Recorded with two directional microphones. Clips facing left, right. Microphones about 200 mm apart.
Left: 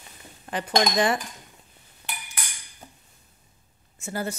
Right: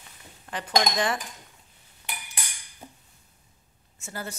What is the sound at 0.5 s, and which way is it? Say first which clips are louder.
Speech: left 3 dB; 15° left (ahead or behind).